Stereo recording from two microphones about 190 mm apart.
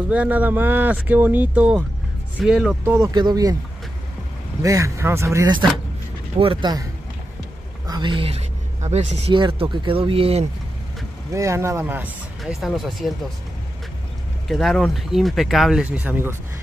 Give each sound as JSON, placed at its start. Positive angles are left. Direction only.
{"t": 0.1, "sound": "speech", "side_deg": -10}
{"t": 4.6, "sound": "speech", "side_deg": -15}
{"t": 7.8, "sound": "speech", "side_deg": -25}
{"t": 11.3, "sound": "speech", "side_deg": -15}
{"t": 14.5, "sound": "speech", "side_deg": 0}